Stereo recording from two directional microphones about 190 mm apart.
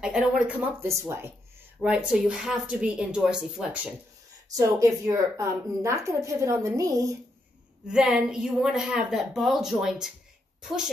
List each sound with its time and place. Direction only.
0.0 s a woman's voice: 5° right (ahead or behind)
4.6 s a woman's voice: 15° right (ahead or behind)
7.9 s a woman's voice: 5° right (ahead or behind)